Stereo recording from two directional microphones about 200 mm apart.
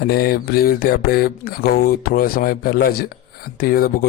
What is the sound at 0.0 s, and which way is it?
A man's voice, 50° left (ahead or behind).